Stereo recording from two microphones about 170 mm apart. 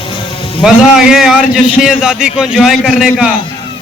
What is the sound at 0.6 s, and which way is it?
A man's voice, 5° right (ahead or behind).